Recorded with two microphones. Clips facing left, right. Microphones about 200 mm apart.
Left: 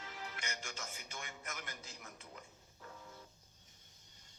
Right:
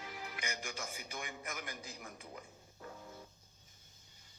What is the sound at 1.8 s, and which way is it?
Speech, 50° right (ahead or behind).